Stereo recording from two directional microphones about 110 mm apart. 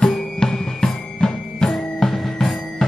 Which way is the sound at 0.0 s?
5° left (ahead or behind).